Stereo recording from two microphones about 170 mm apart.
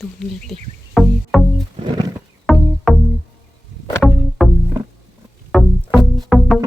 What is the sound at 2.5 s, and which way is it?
Music, centre (ahead or behind).